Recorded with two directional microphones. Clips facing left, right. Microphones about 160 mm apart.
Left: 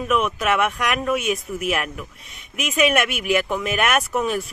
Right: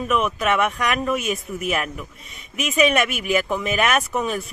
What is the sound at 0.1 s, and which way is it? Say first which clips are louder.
Speech: even; centre (ahead or behind).